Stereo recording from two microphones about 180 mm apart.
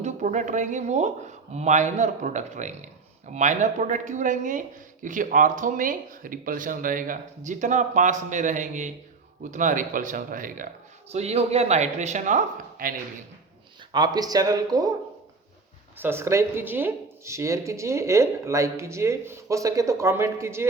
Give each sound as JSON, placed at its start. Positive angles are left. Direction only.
{"t": 0.0, "sound": "speech", "side_deg": -40}
{"t": 11.1, "sound": "speech", "side_deg": -35}
{"t": 13.9, "sound": "speech", "side_deg": -25}
{"t": 16.0, "sound": "speech", "side_deg": -15}